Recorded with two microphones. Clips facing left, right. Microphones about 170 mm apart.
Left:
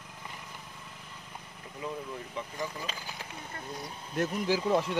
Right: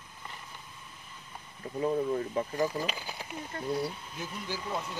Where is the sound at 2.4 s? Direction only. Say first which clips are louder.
Right 7 dB; 45° right (ahead or behind).